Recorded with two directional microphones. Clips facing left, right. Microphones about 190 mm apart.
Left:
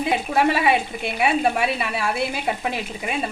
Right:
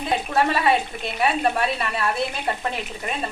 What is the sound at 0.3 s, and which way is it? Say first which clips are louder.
Speech: left 1 dB; 10° left (ahead or behind).